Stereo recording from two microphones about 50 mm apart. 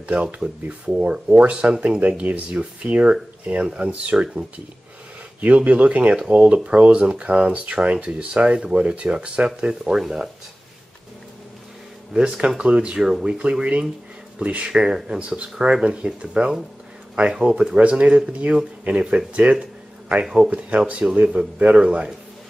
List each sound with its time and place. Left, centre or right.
0.1 s speech: centre
5.4 s speech: right
9.7 s speech: centre
12.1 s speech: centre
12.6 s speech: right
14.7 s speech: centre
17.7 s speech: right